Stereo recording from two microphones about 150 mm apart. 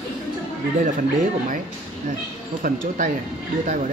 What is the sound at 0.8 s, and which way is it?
Speech, 60° right (ahead or behind).